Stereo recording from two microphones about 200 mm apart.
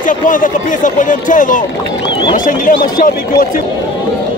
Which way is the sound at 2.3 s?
45° left (ahead or behind).